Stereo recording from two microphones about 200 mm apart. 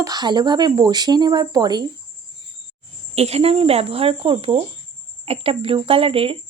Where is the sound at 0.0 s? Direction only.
20° right (ahead or behind).